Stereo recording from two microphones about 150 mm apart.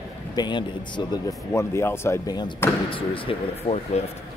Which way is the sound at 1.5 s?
15° left (ahead or behind).